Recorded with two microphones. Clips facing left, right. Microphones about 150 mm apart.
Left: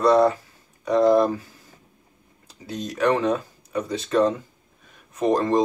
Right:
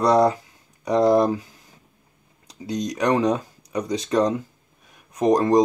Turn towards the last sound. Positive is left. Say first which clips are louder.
# right 3 dB
turn(degrees=-15)  # may be behind; listen again after turning